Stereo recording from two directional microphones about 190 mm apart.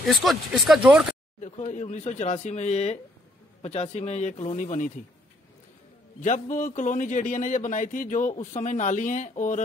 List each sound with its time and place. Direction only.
0.0 s speech: centre (ahead or behind)
1.4 s a man's voice: 40° left (ahead or behind)
6.2 s a man's voice: 40° left (ahead or behind)